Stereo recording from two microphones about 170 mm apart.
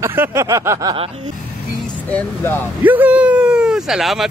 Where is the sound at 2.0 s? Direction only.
10° left (ahead or behind).